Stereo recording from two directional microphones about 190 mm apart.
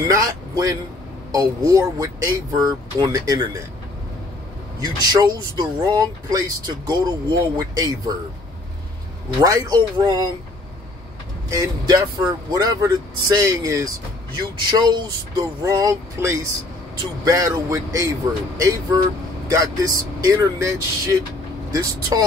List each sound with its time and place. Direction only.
0.1 s vehicle: 20° right (ahead or behind)
1.3 s speech: 20° right (ahead or behind)
4.7 s speech: 20° right (ahead or behind)
9.4 s speech: 15° right (ahead or behind)
11.4 s speech: 15° right (ahead or behind)